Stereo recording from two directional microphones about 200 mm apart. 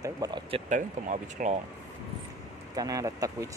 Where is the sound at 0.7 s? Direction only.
35° right (ahead or behind).